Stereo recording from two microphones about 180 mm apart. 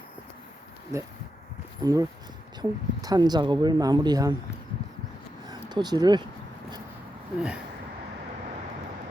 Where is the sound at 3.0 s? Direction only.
20° right (ahead or behind).